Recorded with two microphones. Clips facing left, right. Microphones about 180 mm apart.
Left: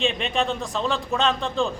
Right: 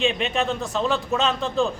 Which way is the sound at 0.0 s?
Centre (ahead or behind).